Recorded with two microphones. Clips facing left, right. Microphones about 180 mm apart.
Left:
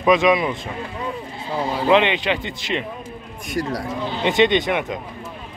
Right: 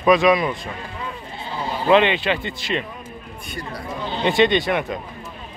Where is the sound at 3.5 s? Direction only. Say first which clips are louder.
Left 8 dB; 90° left.